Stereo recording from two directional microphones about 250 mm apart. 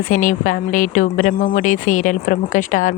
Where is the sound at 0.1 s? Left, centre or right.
Left.